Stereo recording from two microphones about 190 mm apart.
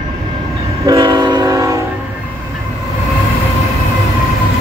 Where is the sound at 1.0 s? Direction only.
25° right (ahead or behind).